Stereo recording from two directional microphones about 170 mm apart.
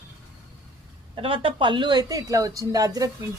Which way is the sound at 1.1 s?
30° right (ahead or behind).